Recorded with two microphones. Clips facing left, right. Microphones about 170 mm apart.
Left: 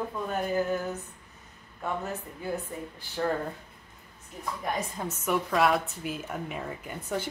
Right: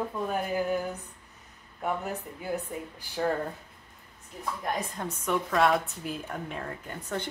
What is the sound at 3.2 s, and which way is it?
Speech, 5° right (ahead or behind).